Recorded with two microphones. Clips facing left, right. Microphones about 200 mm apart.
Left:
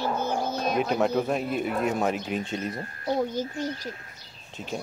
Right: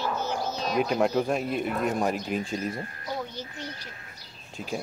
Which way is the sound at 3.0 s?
40° left (ahead or behind).